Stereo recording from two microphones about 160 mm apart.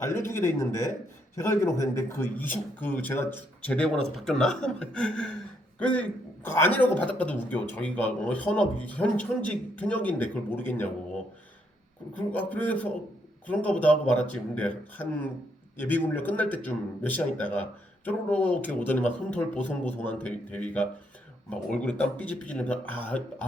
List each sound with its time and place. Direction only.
0.3 s a man's voice: 20° left (ahead or behind)
12.3 s a man's voice: 10° left (ahead or behind)